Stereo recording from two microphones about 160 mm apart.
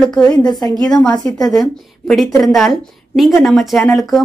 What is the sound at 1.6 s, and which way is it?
A woman's voice, centre (ahead or behind).